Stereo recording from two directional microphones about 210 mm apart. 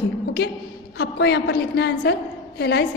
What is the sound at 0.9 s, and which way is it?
A woman's voice, 50° left (ahead or behind).